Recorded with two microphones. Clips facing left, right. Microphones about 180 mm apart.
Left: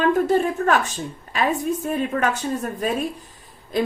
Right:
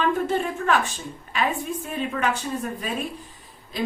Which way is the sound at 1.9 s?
45° left (ahead or behind).